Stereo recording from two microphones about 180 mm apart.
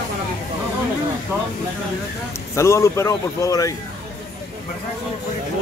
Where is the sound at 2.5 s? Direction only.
15° left (ahead or behind).